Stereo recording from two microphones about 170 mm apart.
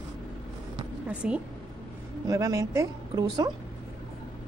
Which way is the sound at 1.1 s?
5° right (ahead or behind).